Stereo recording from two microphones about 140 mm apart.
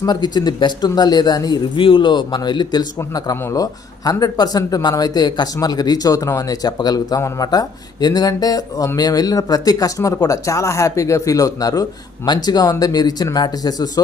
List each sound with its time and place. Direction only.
0.0 s speech: 30° left (ahead or behind)